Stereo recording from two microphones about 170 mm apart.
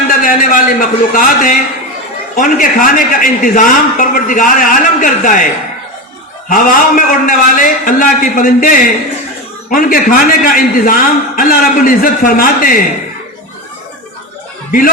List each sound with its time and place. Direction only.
0.1 s a man's voice: 55° left (ahead or behind)
6.5 s a man's voice: 50° left (ahead or behind)